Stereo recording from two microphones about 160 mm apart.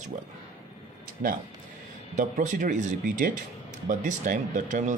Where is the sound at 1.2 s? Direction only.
60° right (ahead or behind).